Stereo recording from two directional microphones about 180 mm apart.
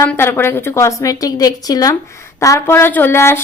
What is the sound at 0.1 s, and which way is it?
A woman's voice, 10° left (ahead or behind).